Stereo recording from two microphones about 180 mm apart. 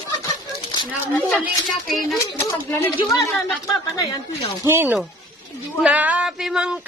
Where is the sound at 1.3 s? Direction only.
5° right (ahead or behind).